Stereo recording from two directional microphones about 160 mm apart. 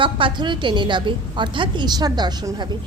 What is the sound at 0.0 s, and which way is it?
A woman's voice, 30° right (ahead or behind).